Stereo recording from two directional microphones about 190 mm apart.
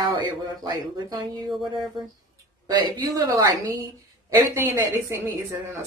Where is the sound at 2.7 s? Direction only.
20° right (ahead or behind).